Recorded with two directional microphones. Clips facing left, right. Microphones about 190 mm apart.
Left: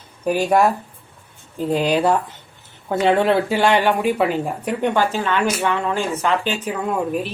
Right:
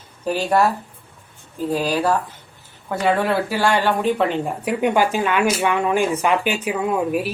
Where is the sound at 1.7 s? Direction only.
20° left (ahead or behind); by 4.5 s 5° left (ahead or behind).